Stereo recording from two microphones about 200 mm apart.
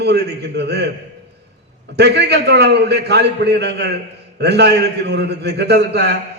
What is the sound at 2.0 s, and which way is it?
A man's voice, 55° right (ahead or behind).